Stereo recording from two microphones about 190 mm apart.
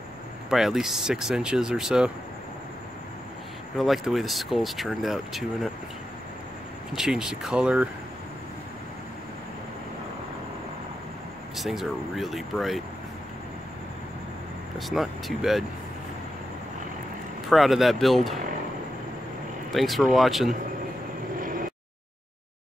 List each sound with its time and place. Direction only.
0.5 s speech: centre (ahead or behind)
3.7 s speech: centre (ahead or behind)
6.9 s speech: centre (ahead or behind)
11.5 s speech: centre (ahead or behind)
14.8 s speech: centre (ahead or behind)
17.5 s speech: centre (ahead or behind)
19.7 s speech: centre (ahead or behind)
21.4 s vehicle: 45° right (ahead or behind)